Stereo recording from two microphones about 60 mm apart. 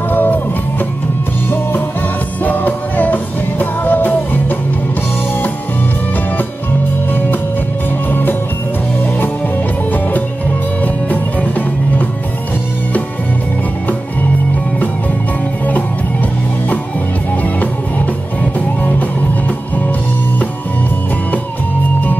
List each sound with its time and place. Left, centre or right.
0.1 s music: left
2.4 s music: left
7.1 s music: left
10.8 s music: left
18.4 s music: left